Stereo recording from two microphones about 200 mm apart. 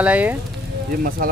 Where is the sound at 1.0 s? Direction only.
45° right (ahead or behind).